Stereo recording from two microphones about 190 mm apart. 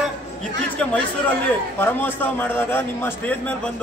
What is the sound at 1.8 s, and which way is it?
A man's voice, 10° left (ahead or behind).